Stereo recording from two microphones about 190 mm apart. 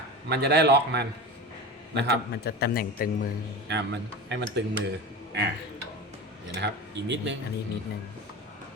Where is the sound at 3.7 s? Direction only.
65° right (ahead or behind).